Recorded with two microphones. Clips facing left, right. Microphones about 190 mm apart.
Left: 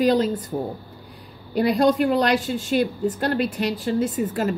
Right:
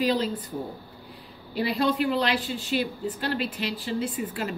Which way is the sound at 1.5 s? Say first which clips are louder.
Left 7 dB; 45° left (ahead or behind).